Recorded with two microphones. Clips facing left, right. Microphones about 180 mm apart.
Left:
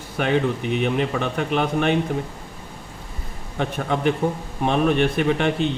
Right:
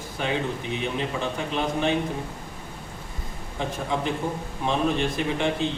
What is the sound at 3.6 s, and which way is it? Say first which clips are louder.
Speech: left 4 dB; 65° left (ahead or behind).